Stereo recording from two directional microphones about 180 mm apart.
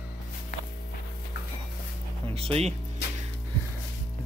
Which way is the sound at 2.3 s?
35° right (ahead or behind).